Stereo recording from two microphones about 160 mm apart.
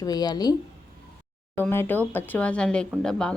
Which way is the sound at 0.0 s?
25° left (ahead or behind).